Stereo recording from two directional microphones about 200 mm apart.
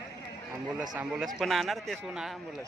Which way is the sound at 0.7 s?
5° right (ahead or behind).